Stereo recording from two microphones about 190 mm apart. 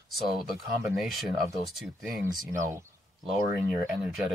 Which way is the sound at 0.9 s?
Centre (ahead or behind).